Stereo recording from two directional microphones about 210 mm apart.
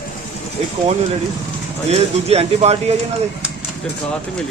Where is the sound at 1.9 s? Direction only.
30° right (ahead or behind).